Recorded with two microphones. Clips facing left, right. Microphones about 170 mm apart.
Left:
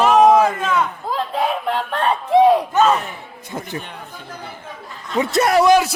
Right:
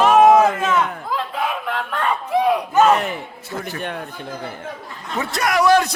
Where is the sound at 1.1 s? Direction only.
35° left (ahead or behind).